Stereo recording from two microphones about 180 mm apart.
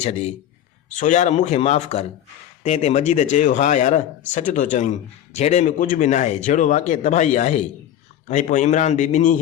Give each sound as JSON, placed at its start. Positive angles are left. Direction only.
{"t": 0.0, "sound": "a man's voice", "side_deg": 35}